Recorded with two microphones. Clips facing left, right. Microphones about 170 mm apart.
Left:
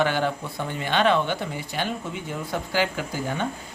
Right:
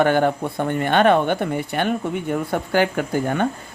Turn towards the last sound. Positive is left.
turn(degrees=-55)  # may be behind; listen again after turning